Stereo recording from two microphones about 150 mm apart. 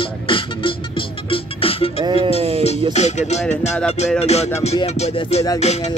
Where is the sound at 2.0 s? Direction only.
35° right (ahead or behind).